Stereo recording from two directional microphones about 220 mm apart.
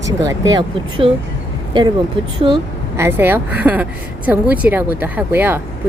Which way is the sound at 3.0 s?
10° right (ahead or behind).